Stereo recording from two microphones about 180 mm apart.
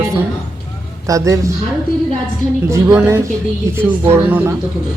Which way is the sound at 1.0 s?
20° right (ahead or behind).